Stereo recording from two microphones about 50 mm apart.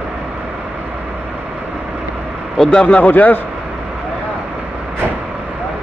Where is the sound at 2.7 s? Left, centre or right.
Left.